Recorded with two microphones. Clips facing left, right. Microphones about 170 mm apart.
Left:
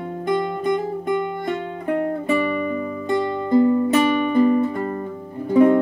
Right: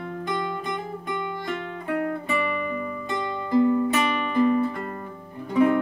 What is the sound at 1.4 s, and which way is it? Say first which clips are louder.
Music: left 6 dB; 30° left (ahead or behind).